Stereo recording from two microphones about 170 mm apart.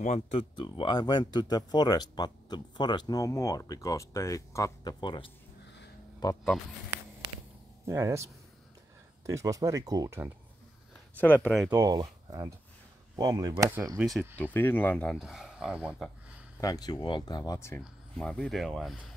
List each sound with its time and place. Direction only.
0.0 s speech: 35° left (ahead or behind); by 6.5 s 20° left (ahead or behind)
7.8 s speech: 15° right (ahead or behind)
11.1 s speech: 10° left (ahead or behind)
11.7 s speech: 20° right (ahead or behind)
14.3 s speech: 10° left (ahead or behind); by 16.1 s 5° right (ahead or behind)
16.5 s speech: 20° left (ahead or behind)
18.1 s speech: 5° left (ahead or behind)